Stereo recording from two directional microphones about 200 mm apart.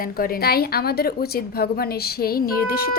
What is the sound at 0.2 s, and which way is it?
A woman's voice, 50° left (ahead or behind).